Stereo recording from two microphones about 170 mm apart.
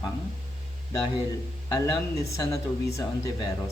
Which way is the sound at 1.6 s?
20° left (ahead or behind).